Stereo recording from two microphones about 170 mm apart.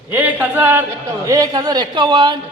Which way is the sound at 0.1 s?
10° right (ahead or behind).